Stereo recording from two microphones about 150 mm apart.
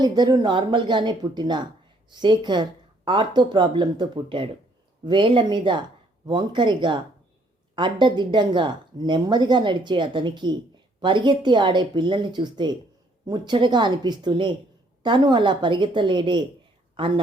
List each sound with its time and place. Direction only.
0.0 s speech: 25° right (ahead or behind)